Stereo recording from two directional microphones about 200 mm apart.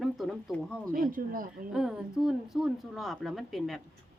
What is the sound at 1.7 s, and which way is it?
A woman's voice, 5° right (ahead or behind).